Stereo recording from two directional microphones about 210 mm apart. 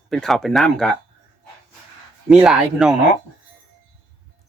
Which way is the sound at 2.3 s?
5° right (ahead or behind).